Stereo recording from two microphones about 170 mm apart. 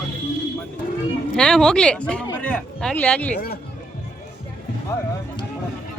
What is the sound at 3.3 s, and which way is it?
Speech, 65° left (ahead or behind).